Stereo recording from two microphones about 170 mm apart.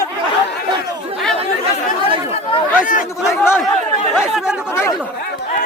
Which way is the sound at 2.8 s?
50° left (ahead or behind).